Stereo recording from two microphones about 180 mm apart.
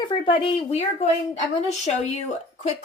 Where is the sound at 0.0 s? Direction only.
25° left (ahead or behind).